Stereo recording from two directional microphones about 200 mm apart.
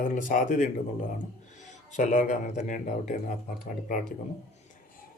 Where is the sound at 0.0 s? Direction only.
40° left (ahead or behind).